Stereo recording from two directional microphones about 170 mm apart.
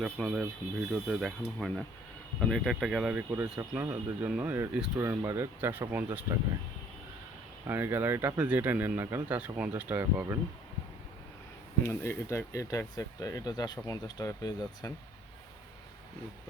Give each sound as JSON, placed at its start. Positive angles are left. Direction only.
{"t": 0.0, "sound": "speech", "side_deg": 0}
{"t": 7.7, "sound": "speech", "side_deg": -10}
{"t": 11.8, "sound": "speech", "side_deg": 15}